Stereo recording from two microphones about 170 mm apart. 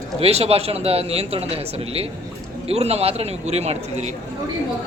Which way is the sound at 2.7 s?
35° right (ahead or behind).